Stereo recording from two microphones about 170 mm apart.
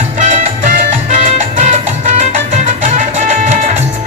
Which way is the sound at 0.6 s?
55° right (ahead or behind).